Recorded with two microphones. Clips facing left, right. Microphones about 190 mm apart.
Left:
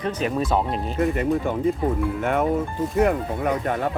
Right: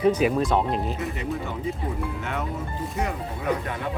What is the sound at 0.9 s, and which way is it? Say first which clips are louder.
Speech: left 8 dB; 55° left (ahead or behind).